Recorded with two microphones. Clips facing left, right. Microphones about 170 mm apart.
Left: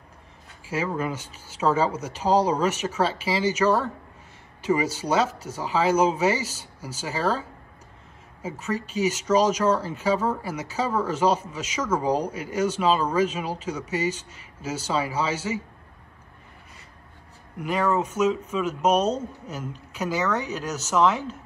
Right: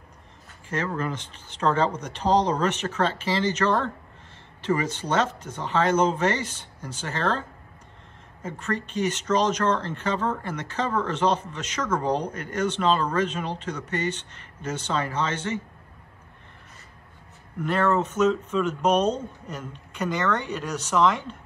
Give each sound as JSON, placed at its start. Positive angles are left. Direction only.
{"t": 0.7, "sound": "speech", "side_deg": 10}
{"t": 17.6, "sound": "speech", "side_deg": 10}